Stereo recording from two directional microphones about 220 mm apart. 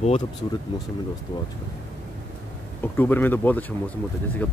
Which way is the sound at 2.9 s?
10° left (ahead or behind).